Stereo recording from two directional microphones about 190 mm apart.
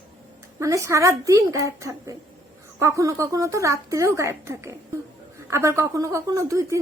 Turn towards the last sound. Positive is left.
turn(degrees=-15)  # may be behind; listen again after turning